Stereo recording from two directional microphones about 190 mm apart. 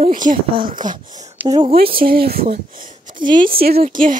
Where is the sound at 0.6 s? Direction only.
45° right (ahead or behind).